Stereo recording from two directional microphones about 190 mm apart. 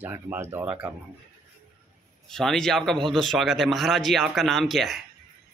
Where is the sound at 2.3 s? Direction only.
Centre (ahead or behind).